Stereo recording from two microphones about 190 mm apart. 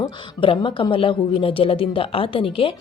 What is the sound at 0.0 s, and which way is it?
A woman's voice, 25° left (ahead or behind).